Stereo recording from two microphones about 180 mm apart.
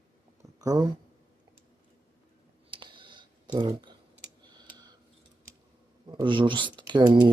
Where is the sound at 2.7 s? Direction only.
25° right (ahead or behind).